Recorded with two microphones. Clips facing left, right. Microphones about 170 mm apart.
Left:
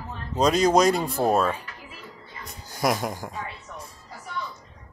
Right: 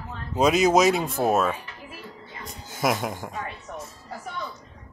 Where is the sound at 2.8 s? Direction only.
Centre (ahead or behind).